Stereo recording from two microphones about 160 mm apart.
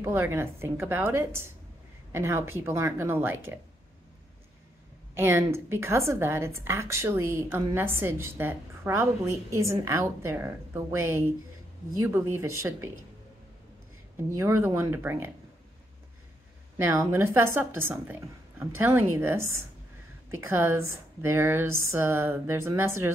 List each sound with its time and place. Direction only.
0.0 s a woman's voice: 15° right (ahead or behind)
5.1 s a woman's voice: 15° right (ahead or behind)
14.3 s a woman's voice: 15° right (ahead or behind)
16.7 s a woman's voice: 15° right (ahead or behind)
18.6 s a woman's voice: 15° right (ahead or behind)